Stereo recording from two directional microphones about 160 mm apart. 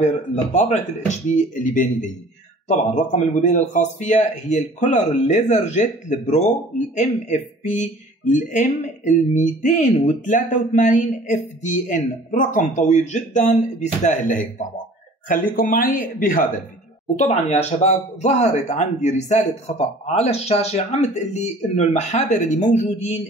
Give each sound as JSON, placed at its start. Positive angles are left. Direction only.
{"t": 0.0, "sound": "speech", "side_deg": 45}
{"t": 15.5, "sound": "speech", "side_deg": 60}
{"t": 17.2, "sound": "speech", "side_deg": 45}